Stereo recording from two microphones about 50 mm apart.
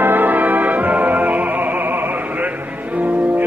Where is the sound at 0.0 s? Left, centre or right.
Right.